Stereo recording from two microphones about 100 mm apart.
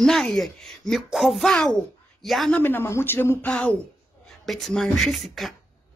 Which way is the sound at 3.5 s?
10° left (ahead or behind).